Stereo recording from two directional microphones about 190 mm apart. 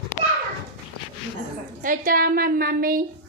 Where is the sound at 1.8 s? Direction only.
45° right (ahead or behind).